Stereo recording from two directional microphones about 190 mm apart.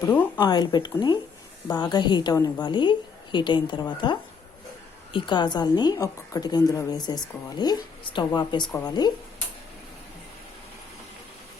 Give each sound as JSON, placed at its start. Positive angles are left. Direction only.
{"t": 0.0, "sound": "speech", "side_deg": 10}
{"t": 0.3, "sound": "a woman's voice", "side_deg": 20}